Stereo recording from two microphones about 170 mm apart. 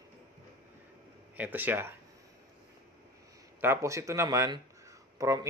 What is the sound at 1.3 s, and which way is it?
Speech, 10° right (ahead or behind).